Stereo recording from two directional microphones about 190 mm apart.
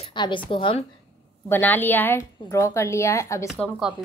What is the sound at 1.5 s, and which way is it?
A woman's voice, 10° left (ahead or behind).